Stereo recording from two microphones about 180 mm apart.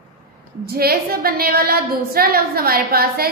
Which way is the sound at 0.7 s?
60° right (ahead or behind).